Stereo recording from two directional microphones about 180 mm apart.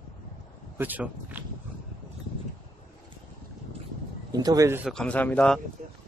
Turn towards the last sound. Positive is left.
turn(degrees=5)  # may be behind; listen again after turning